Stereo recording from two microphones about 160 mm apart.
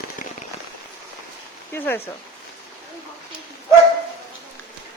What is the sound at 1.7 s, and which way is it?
Speech, 10° left (ahead or behind).